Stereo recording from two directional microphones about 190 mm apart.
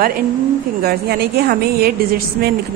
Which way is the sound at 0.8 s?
55° right (ahead or behind).